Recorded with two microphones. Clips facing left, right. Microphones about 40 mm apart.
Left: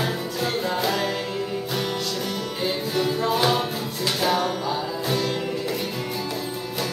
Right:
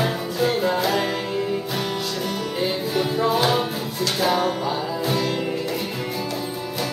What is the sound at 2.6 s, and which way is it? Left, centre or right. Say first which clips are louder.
Music: right 1 dB; centre.